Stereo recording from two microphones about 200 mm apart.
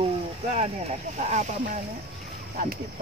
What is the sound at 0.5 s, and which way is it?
Speech, 35° right (ahead or behind).